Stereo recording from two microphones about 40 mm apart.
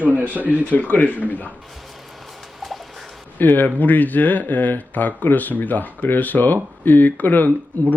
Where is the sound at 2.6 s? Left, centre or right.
Centre.